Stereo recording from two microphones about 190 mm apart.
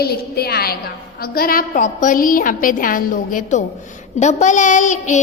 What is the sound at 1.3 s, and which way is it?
A woman's voice, 50° left (ahead or behind).